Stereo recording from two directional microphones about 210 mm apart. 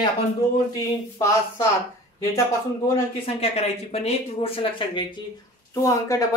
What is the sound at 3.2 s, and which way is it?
Speech, 30° left (ahead or behind).